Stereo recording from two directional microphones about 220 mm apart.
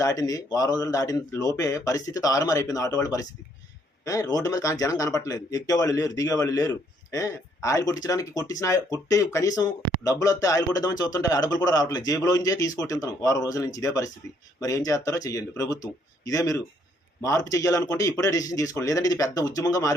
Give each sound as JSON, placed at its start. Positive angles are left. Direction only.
{"t": 0.0, "sound": "speech", "side_deg": 15}